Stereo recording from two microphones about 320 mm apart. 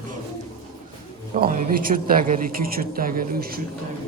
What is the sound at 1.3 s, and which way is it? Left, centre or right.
A woman's voice, right.